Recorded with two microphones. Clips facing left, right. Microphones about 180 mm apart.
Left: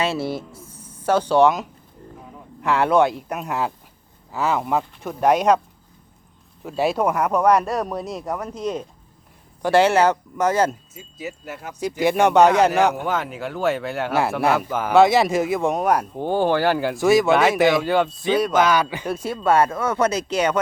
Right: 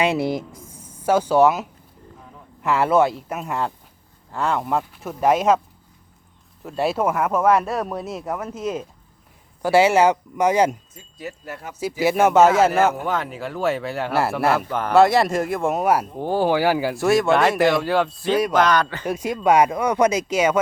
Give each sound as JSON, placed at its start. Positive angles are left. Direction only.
{"t": 0.0, "sound": "speech", "side_deg": -15}
{"t": 6.6, "sound": "speech", "side_deg": 0}
{"t": 10.9, "sound": "a man's voice", "side_deg": 5}
{"t": 19.0, "sound": "speech", "side_deg": -10}